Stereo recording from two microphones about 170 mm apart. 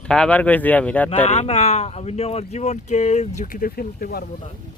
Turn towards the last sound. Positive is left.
turn(degrees=60)  # may be behind; listen again after turning